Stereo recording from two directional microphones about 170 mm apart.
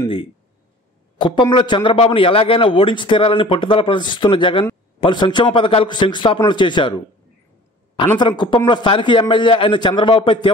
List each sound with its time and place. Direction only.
1.1 s a man's voice: 30° left (ahead or behind)
8.2 s a man's voice: 25° left (ahead or behind)